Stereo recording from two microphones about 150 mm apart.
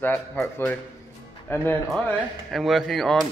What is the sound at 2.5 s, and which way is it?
Speech, centre (ahead or behind).